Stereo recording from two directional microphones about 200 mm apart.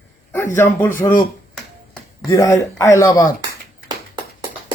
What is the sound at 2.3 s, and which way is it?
Speech, 15° left (ahead or behind).